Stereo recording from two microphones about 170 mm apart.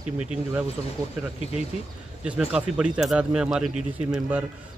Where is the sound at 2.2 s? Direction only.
5° right (ahead or behind).